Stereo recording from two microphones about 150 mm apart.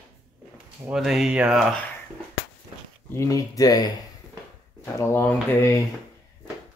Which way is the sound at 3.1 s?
20° left (ahead or behind).